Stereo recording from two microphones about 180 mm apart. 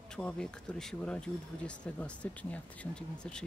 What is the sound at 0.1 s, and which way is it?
Speech, 5° left (ahead or behind).